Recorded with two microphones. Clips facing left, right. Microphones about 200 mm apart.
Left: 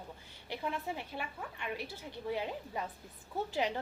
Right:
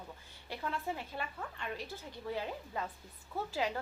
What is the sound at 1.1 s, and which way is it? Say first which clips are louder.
A woman's voice: even; 10° left (ahead or behind).